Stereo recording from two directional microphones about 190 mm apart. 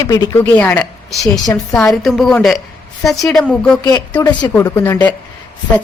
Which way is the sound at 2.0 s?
Centre (ahead or behind).